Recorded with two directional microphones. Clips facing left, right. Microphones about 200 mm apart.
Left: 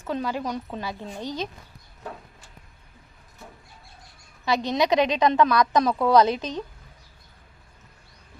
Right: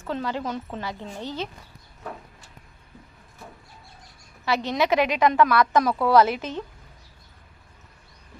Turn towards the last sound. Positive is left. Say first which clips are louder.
# even
turn(degrees=15)  # may be behind; listen again after turning